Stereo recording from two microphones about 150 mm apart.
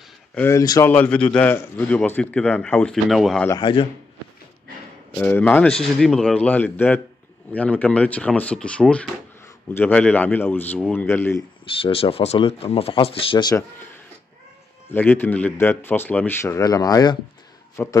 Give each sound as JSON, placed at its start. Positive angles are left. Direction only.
{"t": 0.3, "sound": "speech", "side_deg": 10}
{"t": 0.6, "sound": "speech", "side_deg": 20}
{"t": 0.9, "sound": "a man's voice", "side_deg": 10}
{"t": 5.1, "sound": "a man's voice", "side_deg": 10}
{"t": 11.6, "sound": "speech", "side_deg": 40}
{"t": 14.9, "sound": "a man's voice", "side_deg": 15}
{"t": 17.8, "sound": "a man's voice", "side_deg": 15}